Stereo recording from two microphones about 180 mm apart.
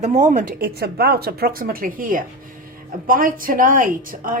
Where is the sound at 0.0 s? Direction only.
40° right (ahead or behind).